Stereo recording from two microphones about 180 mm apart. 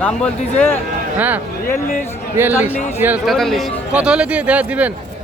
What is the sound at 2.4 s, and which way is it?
Speech, 10° right (ahead or behind).